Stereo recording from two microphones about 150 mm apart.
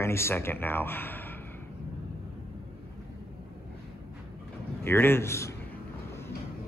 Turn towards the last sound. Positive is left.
turn(degrees=20)  # may be behind; listen again after turning